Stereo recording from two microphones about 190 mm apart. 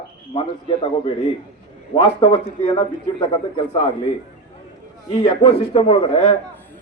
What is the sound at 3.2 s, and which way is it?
Speech, 25° left (ahead or behind).